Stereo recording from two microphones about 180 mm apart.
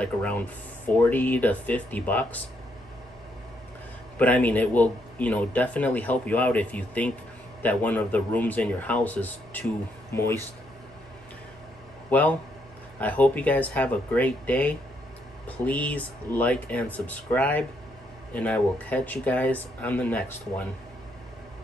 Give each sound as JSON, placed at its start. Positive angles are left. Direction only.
{"t": 0.0, "sound": "speech", "side_deg": 5}
{"t": 4.2, "sound": "speech", "side_deg": 10}
{"t": 12.1, "sound": "speech", "side_deg": 10}